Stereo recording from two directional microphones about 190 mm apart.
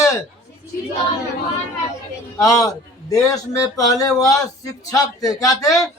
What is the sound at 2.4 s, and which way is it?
A man's voice, 15° left (ahead or behind).